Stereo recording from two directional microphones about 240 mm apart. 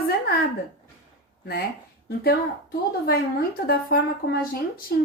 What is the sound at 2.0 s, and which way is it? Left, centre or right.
Speech, left.